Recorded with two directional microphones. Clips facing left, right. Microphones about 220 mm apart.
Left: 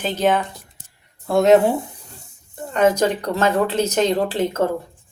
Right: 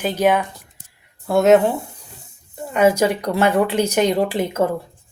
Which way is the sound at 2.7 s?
10° right (ahead or behind).